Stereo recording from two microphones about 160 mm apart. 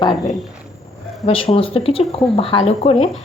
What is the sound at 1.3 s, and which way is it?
Speech, 35° left (ahead or behind).